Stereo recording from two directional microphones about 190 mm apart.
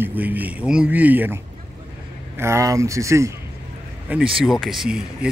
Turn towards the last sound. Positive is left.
turn(degrees=-5)  # may be behind; listen again after turning